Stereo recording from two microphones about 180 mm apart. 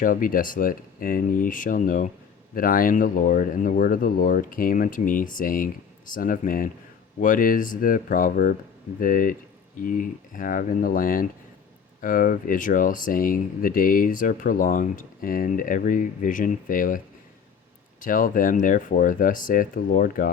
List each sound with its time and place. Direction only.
0.0 s speech: 50° left (ahead or behind)
18.0 s speech: 50° left (ahead or behind)